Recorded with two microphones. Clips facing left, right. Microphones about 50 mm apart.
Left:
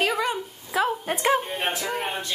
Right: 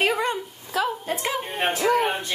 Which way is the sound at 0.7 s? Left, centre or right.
Centre.